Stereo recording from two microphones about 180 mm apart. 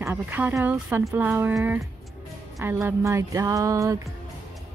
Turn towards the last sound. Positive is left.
turn(degrees=-15)  # may be behind; listen again after turning